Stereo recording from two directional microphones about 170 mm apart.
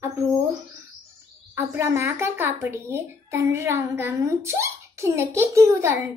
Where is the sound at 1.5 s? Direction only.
15° right (ahead or behind).